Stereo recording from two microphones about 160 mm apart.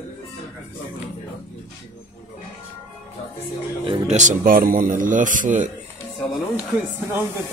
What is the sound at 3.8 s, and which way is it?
Speech, 30° right (ahead or behind).